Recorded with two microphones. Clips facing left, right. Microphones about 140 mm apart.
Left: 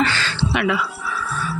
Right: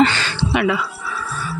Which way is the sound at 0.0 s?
20° right (ahead or behind).